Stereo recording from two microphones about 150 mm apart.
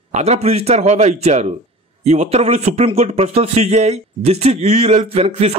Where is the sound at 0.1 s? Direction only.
45° right (ahead or behind).